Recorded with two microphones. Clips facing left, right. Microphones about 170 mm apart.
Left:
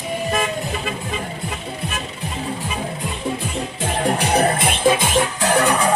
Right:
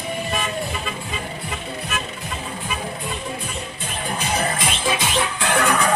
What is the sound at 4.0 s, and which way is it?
Music, 80° left.